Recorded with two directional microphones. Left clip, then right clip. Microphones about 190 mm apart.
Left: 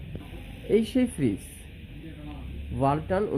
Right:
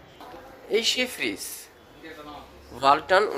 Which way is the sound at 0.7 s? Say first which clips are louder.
Right 1 dB; 15° left (ahead or behind).